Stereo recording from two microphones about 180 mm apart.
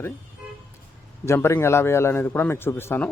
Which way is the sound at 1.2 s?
15° left (ahead or behind).